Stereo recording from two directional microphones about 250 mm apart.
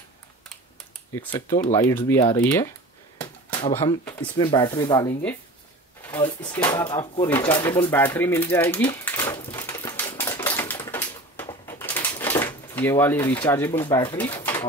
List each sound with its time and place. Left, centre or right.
1.1 s speech: centre
8.9 s typewriter: centre
10.9 s a sound: centre
12.2 s speech: centre
14.4 s pigeon: centre